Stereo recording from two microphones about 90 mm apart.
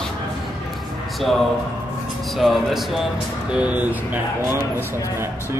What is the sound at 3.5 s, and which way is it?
Speech, 15° right (ahead or behind).